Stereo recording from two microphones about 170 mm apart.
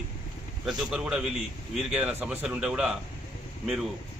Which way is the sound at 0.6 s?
5° right (ahead or behind).